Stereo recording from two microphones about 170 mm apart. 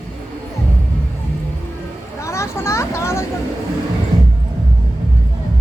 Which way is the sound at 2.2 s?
15° left (ahead or behind).